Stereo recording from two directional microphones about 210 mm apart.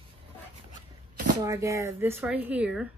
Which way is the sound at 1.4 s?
15° right (ahead or behind).